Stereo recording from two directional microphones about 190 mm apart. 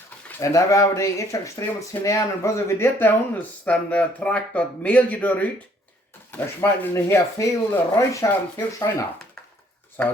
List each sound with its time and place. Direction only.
0.3 s speech: 15° left (ahead or behind)